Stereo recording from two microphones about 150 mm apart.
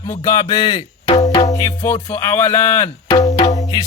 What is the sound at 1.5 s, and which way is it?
Speech, 20° left (ahead or behind).